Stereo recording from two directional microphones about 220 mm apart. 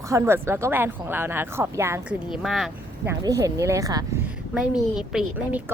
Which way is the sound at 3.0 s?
15° right (ahead or behind).